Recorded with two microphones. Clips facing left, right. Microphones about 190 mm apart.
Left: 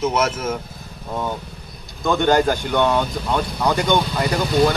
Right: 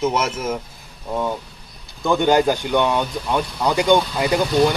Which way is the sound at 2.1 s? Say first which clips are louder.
Right 1 dB; 15° right (ahead or behind).